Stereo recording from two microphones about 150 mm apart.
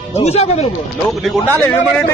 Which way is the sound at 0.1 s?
45° left (ahead or behind).